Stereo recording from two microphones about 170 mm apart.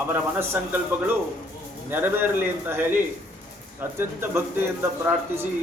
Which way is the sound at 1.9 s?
10° right (ahead or behind).